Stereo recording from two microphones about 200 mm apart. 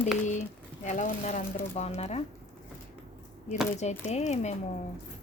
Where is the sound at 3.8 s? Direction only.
35° left (ahead or behind).